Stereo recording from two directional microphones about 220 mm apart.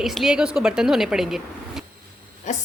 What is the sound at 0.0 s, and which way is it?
Speech, centre (ahead or behind).